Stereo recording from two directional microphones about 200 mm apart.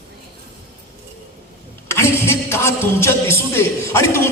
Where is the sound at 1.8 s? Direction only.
15° left (ahead or behind).